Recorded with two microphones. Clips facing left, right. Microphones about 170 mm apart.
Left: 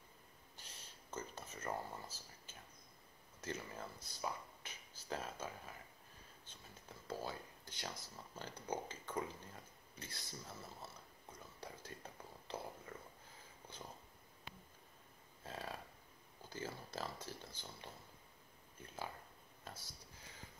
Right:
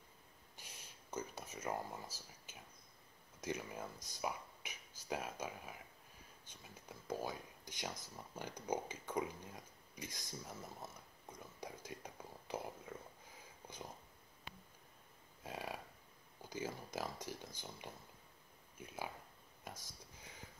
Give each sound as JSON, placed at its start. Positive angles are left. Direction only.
{"t": 0.6, "sound": "a sound", "side_deg": -10}
{"t": 3.3, "sound": "speech", "side_deg": -15}
{"t": 11.6, "sound": "whispering", "side_deg": -15}
{"t": 13.7, "sound": "dog", "side_deg": -15}
{"t": 15.4, "sound": "a sound", "side_deg": -15}
{"t": 16.4, "sound": "speech", "side_deg": -15}
{"t": 19.6, "sound": "speech", "side_deg": -15}